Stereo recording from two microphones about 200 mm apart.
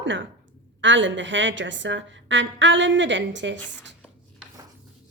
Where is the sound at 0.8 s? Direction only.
70° right (ahead or behind).